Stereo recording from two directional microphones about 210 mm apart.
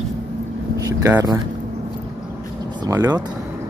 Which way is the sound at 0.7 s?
15° right (ahead or behind).